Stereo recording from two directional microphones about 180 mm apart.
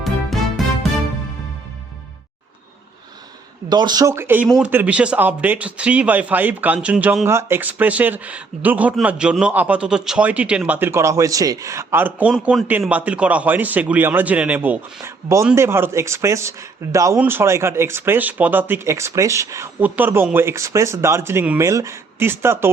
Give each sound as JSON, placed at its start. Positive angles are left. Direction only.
{"t": 0.0, "sound": "music", "side_deg": 0}
{"t": 3.7, "sound": "speech", "side_deg": -25}